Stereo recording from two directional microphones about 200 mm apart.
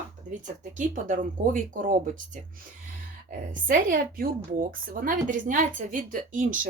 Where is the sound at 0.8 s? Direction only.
40° right (ahead or behind).